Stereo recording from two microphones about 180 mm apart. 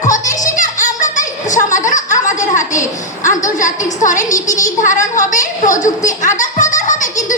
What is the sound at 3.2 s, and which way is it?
A woman's voice, 45° left (ahead or behind).